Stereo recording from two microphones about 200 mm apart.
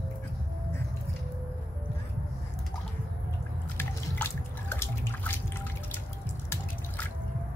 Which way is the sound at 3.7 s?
10° left (ahead or behind).